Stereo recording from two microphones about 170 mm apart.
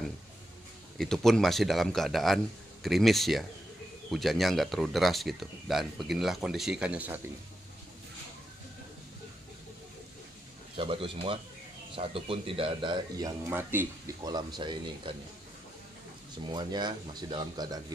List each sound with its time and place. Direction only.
0.9 s speech: centre (ahead or behind)
10.8 s a man's voice: 30° right (ahead or behind)
16.4 s speech: 25° right (ahead or behind)